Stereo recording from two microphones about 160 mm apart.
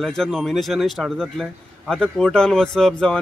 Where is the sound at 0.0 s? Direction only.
Centre (ahead or behind).